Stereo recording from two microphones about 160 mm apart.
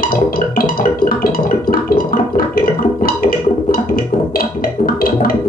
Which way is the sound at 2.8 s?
65° left (ahead or behind).